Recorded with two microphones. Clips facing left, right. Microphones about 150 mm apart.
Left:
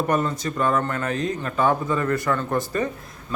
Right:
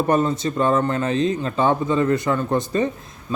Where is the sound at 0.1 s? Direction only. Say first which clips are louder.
Right 4 dB; 25° right (ahead or behind).